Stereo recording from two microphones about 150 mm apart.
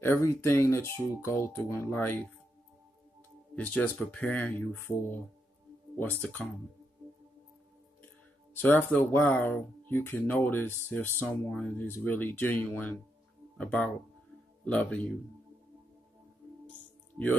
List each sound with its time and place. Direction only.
0.0 s speech: 15° left (ahead or behind)
3.5 s speech: 10° left (ahead or behind)
8.5 s speech: 15° left (ahead or behind)